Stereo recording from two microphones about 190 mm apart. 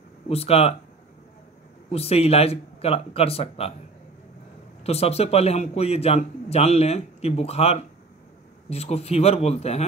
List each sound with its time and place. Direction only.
0.3 s a man's voice: 30° left (ahead or behind)
1.9 s a man's voice: 30° left (ahead or behind)
4.8 s a man's voice: 35° left (ahead or behind)